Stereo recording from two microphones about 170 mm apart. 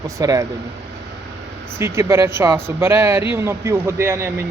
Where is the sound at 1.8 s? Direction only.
15° right (ahead or behind).